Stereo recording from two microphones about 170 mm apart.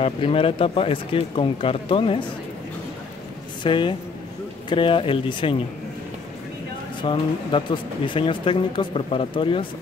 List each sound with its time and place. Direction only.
0.0 s speech: 35° left (ahead or behind)
3.6 s speech: 30° left (ahead or behind)
7.0 s speech: 30° left (ahead or behind)